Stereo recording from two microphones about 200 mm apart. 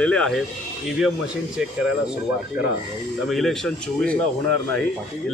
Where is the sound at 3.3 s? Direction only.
Centre (ahead or behind).